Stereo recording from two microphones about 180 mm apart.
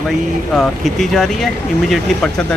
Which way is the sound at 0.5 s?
Centre (ahead or behind).